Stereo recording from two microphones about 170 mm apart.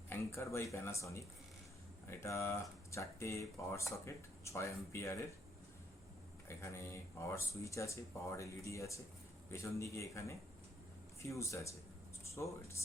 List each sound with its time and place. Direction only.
0.1 s speech: 15° left (ahead or behind)
6.5 s speech: 15° left (ahead or behind)